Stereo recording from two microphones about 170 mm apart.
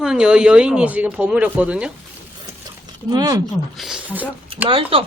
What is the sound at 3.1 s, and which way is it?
Speech, 25° right (ahead or behind).